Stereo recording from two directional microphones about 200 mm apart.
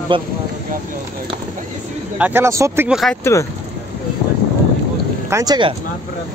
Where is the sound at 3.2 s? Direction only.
15° left (ahead or behind).